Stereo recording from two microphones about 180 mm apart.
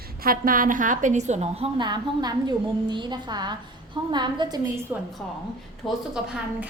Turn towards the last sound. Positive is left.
turn(degrees=0)  # may be behind; listen again after turning